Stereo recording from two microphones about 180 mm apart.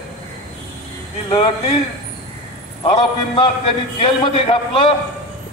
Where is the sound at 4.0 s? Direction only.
30° left (ahead or behind).